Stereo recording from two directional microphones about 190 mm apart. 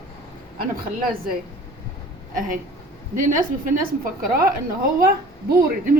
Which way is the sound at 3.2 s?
45° right (ahead or behind).